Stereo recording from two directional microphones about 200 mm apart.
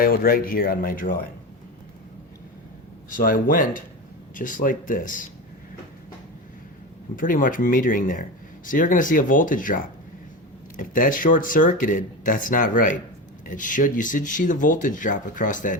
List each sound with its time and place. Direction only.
0.0 s speech: 45° left (ahead or behind)
3.1 s speech: 45° left (ahead or behind)
7.2 s speech: 40° left (ahead or behind)